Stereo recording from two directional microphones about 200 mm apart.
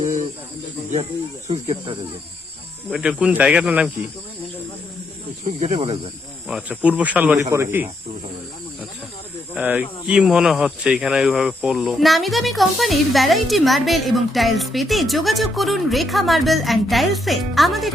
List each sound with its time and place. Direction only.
0.0 s cricket: 40° right (ahead or behind)
1.5 s speech: 35° right (ahead or behind)
2.9 s speech: 5° right (ahead or behind)
5.5 s speech: 35° right (ahead or behind)
6.5 s speech: 5° right (ahead or behind)
9.6 s speech: 5° right (ahead or behind)